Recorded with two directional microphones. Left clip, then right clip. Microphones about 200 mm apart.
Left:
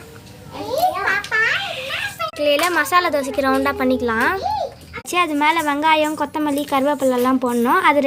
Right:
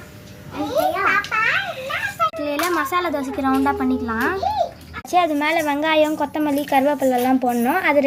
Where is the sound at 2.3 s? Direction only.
50° left (ahead or behind).